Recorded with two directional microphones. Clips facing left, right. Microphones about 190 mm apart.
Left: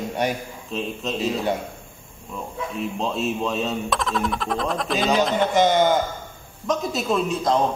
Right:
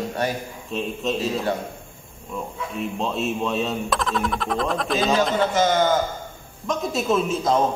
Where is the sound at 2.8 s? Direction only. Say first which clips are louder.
Even; centre (ahead or behind).